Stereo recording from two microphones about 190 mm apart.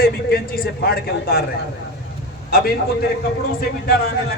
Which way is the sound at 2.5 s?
55° left (ahead or behind).